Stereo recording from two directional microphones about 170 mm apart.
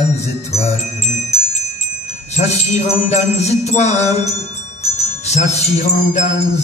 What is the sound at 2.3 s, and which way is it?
Jingle bell, 40° left (ahead or behind).